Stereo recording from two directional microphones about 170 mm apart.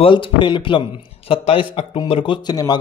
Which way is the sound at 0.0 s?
30° left (ahead or behind).